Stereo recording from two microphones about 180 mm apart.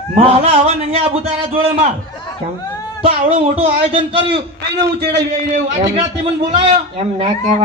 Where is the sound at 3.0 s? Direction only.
35° right (ahead or behind).